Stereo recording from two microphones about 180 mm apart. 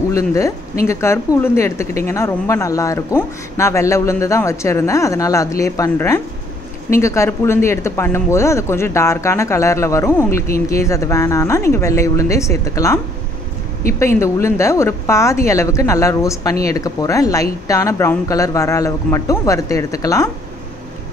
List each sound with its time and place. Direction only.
0.1 s speech: 15° left (ahead or behind)